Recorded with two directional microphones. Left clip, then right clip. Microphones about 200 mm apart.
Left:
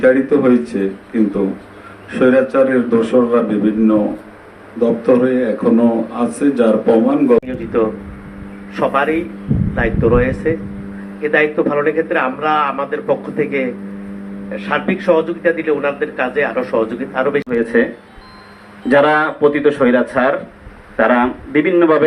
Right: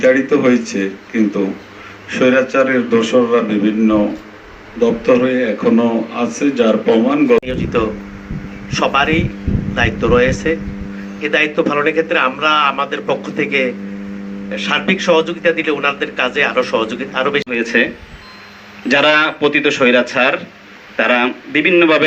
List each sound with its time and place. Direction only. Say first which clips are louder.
0.0 s speech: even; 30° left (ahead or behind)
2.1 s speech: even; 30° left (ahead or behind)
8.7 s a man's voice: right 1 dB; 10° right (ahead or behind)
17.5 s speech: left 1 dB; 15° left (ahead or behind)
18.9 s speech: even; 20° left (ahead or behind)